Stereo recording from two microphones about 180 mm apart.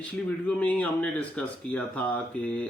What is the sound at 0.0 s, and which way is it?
Speech, 5° left (ahead or behind).